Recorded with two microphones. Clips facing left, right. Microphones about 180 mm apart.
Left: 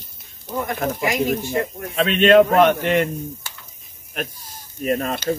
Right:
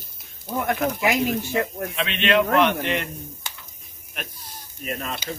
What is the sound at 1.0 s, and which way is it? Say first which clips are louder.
Speech: left 2 dB; 75° right (ahead or behind).